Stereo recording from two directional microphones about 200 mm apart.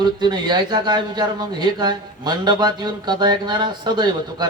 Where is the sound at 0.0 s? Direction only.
20° right (ahead or behind).